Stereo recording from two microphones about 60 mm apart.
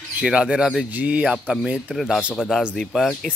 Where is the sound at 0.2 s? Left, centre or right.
Centre.